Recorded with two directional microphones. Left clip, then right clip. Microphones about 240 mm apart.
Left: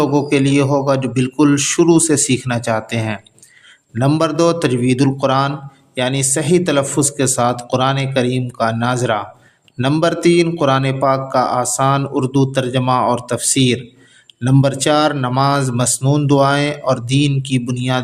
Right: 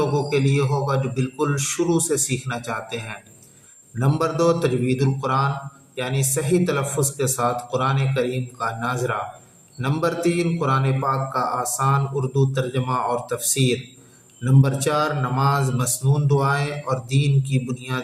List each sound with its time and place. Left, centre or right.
0.0 s a man's voice: left